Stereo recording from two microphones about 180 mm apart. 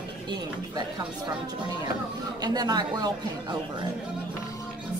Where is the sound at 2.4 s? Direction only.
20° right (ahead or behind).